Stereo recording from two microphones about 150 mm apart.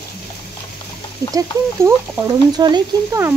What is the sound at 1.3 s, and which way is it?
Speech, 25° right (ahead or behind).